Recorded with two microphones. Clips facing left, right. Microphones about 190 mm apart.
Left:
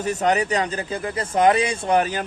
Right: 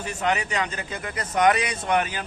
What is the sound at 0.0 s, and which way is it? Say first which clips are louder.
Speech: left 5 dB; 40° left (ahead or behind).